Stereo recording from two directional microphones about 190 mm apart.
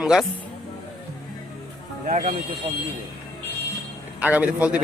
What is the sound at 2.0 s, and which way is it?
Speech, 40° right (ahead or behind).